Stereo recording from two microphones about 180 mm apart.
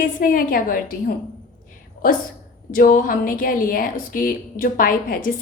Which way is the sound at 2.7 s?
50° left (ahead or behind).